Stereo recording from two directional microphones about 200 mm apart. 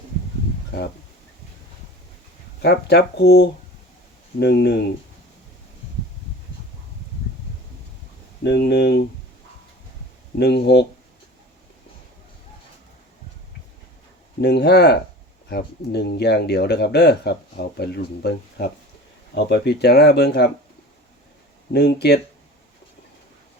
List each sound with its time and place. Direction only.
2.6 s speech: 55° left (ahead or behind)
8.4 s speech: 55° left (ahead or behind)
10.3 s speech: 55° left (ahead or behind)
14.4 s speech: 55° left (ahead or behind)
21.7 s speech: 55° left (ahead or behind)